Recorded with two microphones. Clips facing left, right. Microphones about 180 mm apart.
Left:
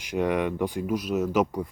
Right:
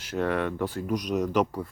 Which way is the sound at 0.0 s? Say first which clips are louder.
Left 2 dB; 15° left (ahead or behind).